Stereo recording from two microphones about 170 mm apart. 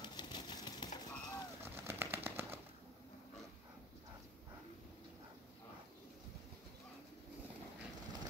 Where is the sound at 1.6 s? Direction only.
15° right (ahead or behind).